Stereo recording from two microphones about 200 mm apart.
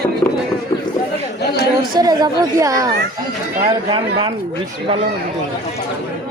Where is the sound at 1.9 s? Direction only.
20° right (ahead or behind).